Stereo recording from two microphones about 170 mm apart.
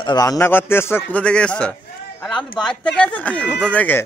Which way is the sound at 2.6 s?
5° left (ahead or behind).